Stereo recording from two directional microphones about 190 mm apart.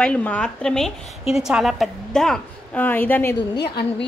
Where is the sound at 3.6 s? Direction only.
60° left (ahead or behind).